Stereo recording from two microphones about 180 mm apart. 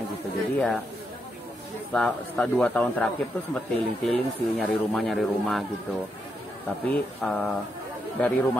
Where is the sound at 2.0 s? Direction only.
5° left (ahead or behind).